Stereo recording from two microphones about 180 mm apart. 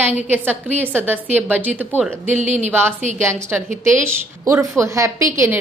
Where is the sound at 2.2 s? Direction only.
40° right (ahead or behind).